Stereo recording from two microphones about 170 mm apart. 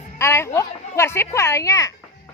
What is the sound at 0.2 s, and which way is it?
Speech, 15° left (ahead or behind).